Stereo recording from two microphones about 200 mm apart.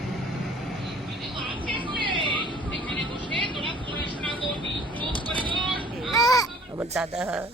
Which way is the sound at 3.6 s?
25° right (ahead or behind).